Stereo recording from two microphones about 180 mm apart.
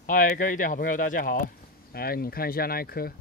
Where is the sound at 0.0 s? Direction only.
50° left (ahead or behind).